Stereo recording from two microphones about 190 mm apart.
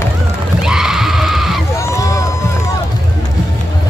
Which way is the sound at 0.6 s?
5° right (ahead or behind).